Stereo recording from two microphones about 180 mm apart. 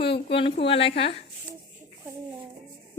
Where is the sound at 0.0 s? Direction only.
70° left (ahead or behind).